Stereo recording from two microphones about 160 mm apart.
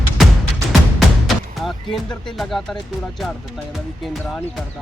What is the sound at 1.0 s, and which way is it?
Speech, centre (ahead or behind).